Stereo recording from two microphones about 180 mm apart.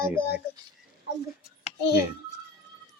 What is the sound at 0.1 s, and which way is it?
Speech, 10° right (ahead or behind).